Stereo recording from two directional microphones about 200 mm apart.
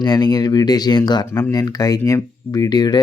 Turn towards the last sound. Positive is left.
turn(degrees=20)  # may be behind; listen again after turning